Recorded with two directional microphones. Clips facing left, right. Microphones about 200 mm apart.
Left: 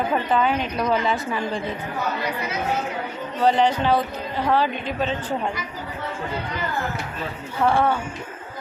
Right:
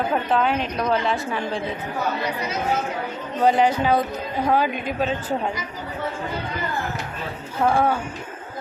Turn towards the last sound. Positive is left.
turn(degrees=-10)  # may be behind; listen again after turning